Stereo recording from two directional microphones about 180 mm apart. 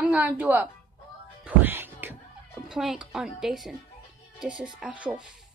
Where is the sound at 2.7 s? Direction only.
5° right (ahead or behind).